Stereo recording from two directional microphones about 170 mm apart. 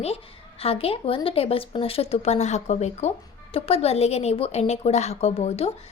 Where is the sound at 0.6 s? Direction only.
35° left (ahead or behind).